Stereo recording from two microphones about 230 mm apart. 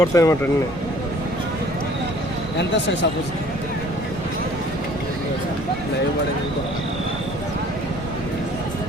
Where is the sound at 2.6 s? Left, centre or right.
Left.